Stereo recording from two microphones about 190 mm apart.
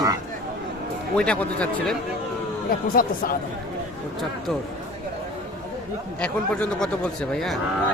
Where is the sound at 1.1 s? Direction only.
5° left (ahead or behind).